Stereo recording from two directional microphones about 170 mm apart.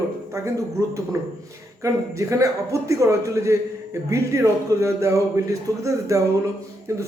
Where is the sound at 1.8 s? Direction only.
20° right (ahead or behind).